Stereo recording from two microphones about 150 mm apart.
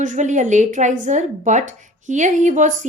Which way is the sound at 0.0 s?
55° right (ahead or behind).